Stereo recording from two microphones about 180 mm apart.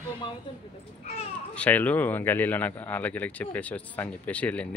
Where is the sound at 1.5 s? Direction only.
10° left (ahead or behind).